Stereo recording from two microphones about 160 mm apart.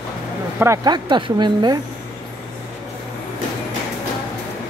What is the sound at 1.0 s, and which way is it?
Speech, 30° right (ahead or behind).